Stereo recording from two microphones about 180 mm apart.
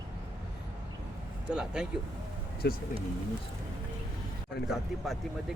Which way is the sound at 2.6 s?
65° left (ahead or behind).